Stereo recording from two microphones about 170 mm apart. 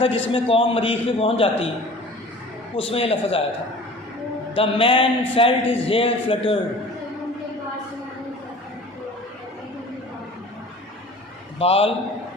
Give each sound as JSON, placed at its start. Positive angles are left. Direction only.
{"t": 0.0, "sound": "a man's voice", "side_deg": 30}
{"t": 2.7, "sound": "a man's voice", "side_deg": 35}
{"t": 4.5, "sound": "a man's voice", "side_deg": 30}
{"t": 11.6, "sound": "a man's voice", "side_deg": 35}